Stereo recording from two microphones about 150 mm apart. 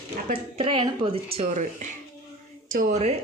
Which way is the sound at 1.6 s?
55° right (ahead or behind).